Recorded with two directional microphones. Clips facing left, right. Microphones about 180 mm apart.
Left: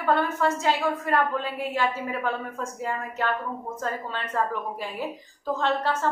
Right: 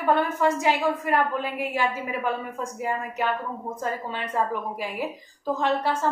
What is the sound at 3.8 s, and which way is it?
A woman's voice, 10° right (ahead or behind).